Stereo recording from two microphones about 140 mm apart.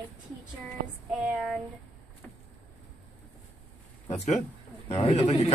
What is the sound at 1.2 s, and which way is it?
Speech, 5° right (ahead or behind).